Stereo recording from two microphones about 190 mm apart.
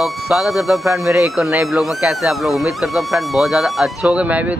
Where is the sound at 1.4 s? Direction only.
Centre (ahead or behind).